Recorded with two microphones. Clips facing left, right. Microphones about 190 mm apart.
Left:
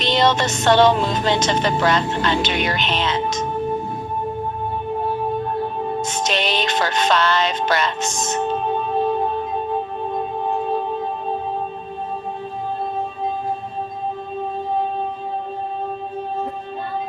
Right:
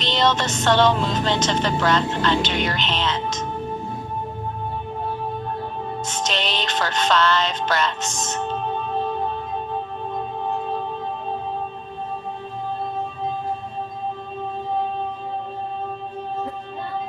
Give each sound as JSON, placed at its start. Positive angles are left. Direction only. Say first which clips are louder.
{"t": 0.0, "sound": "music", "louder": "left 3 dB", "side_deg": 10}
{"t": 6.0, "sound": "music", "louder": "left 2 dB", "side_deg": 10}
{"t": 10.2, "sound": "music", "louder": "left 3 dB", "side_deg": 15}